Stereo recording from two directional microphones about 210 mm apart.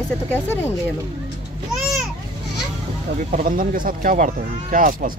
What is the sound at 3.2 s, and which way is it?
Speech, 40° right (ahead or behind).